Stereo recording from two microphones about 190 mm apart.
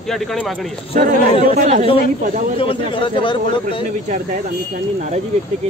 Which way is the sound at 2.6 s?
25° left (ahead or behind).